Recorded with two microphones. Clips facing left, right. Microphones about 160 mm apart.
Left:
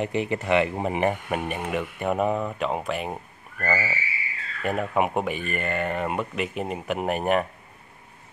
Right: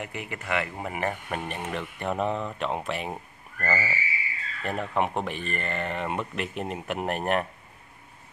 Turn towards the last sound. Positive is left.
turn(degrees=5)  # may be behind; listen again after turning